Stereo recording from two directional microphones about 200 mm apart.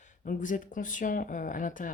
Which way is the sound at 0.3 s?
40° left (ahead or behind).